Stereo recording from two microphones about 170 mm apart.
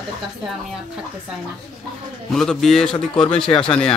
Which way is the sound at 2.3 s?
Centre (ahead or behind).